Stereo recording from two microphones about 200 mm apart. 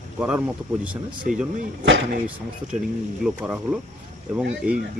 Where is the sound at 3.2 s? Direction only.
5° right (ahead or behind).